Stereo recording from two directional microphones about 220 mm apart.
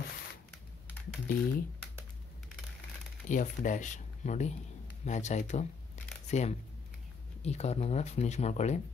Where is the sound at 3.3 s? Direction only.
35° left (ahead or behind).